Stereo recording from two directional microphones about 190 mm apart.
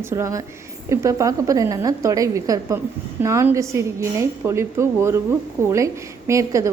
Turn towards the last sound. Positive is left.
turn(degrees=-15)  # may be behind; listen again after turning